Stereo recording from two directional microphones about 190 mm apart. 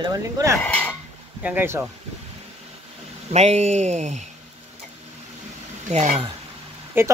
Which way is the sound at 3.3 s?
35° right (ahead or behind).